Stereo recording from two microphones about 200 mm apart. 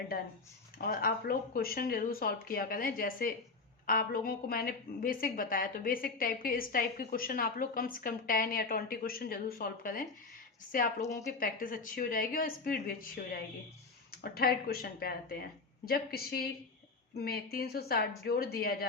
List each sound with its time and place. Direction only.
0.8 s a woman's voice: 50° left (ahead or behind)
11.0 s speech: 15° left (ahead or behind)
11.3 s a woman's voice: 45° left (ahead or behind)